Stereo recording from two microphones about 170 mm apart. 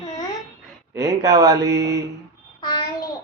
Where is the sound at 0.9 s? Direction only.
20° right (ahead or behind).